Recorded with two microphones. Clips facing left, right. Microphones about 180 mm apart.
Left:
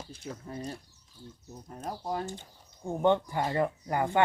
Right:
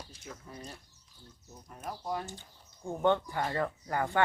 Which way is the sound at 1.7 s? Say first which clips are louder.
Left 2 dB; 35° left (ahead or behind).